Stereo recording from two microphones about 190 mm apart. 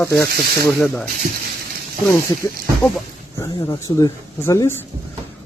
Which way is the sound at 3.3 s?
15° left (ahead or behind).